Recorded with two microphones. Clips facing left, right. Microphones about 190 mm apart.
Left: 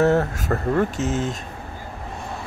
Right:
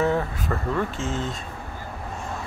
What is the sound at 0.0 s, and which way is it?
Speech, 75° left (ahead or behind).